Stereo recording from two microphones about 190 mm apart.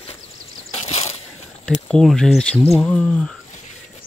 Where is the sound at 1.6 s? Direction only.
5° left (ahead or behind).